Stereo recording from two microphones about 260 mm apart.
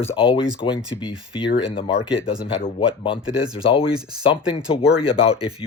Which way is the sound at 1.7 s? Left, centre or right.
Left.